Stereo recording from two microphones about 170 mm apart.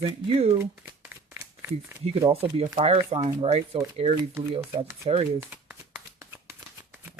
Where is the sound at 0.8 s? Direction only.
15° right (ahead or behind).